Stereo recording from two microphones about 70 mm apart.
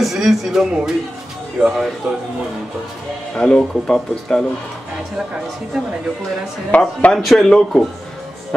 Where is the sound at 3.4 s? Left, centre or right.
Centre.